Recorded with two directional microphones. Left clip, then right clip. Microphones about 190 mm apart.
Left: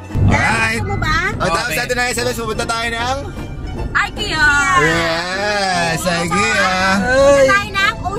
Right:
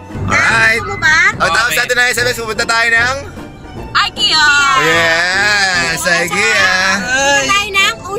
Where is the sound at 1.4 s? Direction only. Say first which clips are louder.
Right 5 dB; 20° right (ahead or behind).